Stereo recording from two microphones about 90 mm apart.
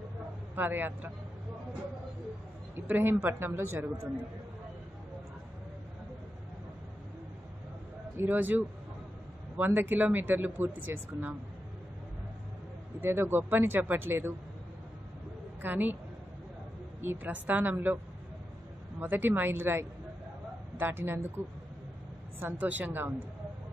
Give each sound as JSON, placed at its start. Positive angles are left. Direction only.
{"t": 0.6, "sound": "speech", "side_deg": -20}
{"t": 2.7, "sound": "speech", "side_deg": -25}
{"t": 8.2, "sound": "speech", "side_deg": -20}
{"t": 13.0, "sound": "speech", "side_deg": -25}
{"t": 15.6, "sound": "speech", "side_deg": -20}
{"t": 17.0, "sound": "speech", "side_deg": -20}
{"t": 18.9, "sound": "speech", "side_deg": -20}
{"t": 22.4, "sound": "speech", "side_deg": -20}